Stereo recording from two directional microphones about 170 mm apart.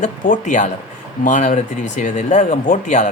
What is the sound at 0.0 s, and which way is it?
Speech, 45° left (ahead or behind).